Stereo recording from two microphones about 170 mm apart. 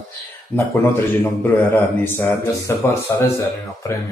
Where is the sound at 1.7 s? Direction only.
10° left (ahead or behind).